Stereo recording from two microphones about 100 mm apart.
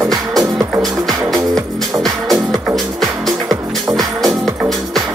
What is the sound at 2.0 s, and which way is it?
Music, centre (ahead or behind).